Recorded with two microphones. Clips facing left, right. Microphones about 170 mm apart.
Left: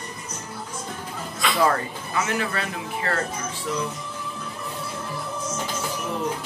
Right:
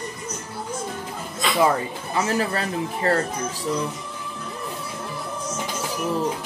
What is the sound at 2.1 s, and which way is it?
Speech, 35° right (ahead or behind).